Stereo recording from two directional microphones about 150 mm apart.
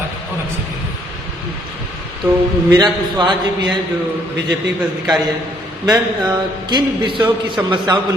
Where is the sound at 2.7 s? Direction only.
30° right (ahead or behind).